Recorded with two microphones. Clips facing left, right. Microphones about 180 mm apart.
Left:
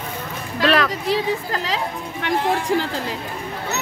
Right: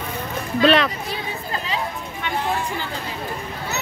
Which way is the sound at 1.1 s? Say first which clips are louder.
Left 7 dB; 90° left.